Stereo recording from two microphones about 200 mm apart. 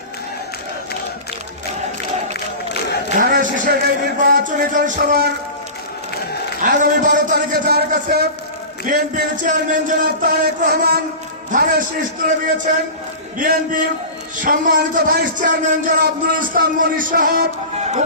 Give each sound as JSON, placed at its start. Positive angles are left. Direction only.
{"t": 3.2, "sound": "a man's voice", "side_deg": -45}
{"t": 6.6, "sound": "a man's voice", "side_deg": -40}
{"t": 13.4, "sound": "a man's voice", "side_deg": -45}
{"t": 17.7, "sound": "music", "side_deg": -35}